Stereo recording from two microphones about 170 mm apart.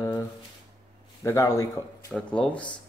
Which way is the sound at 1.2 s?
15° left (ahead or behind).